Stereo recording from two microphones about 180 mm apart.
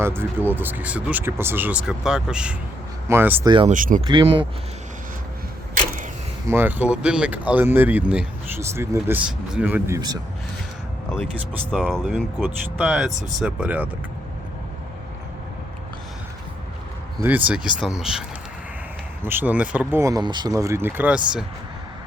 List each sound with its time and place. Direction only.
0.0 s speech: 15° right (ahead or behind)
3.7 s speech: 45° right (ahead or behind)
4.0 s speech: 25° right (ahead or behind)
5.7 s a sound: 45° right (ahead or behind)
6.5 s speech: 10° right (ahead or behind)
11.2 s speech: centre (ahead or behind)
17.2 s speech: 10° right (ahead or behind)